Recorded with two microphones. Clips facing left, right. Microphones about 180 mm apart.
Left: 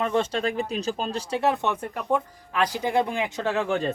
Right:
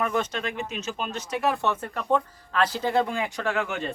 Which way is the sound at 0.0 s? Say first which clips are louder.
Left 3 dB; 30° left (ahead or behind).